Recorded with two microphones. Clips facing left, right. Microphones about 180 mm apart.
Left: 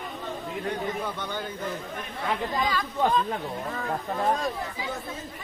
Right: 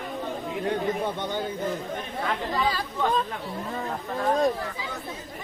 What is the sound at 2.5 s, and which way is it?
Speech, 35° right (ahead or behind).